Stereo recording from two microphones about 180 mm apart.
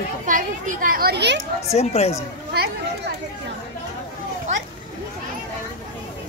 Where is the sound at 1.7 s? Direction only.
35° left (ahead or behind).